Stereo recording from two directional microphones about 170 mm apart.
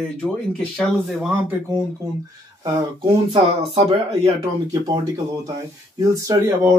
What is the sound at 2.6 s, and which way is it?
Speech, 25° right (ahead or behind).